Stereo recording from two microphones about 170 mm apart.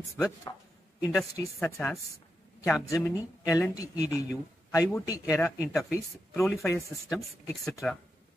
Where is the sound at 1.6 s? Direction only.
5° left (ahead or behind).